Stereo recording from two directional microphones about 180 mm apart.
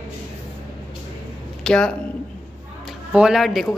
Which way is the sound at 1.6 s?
5° left (ahead or behind).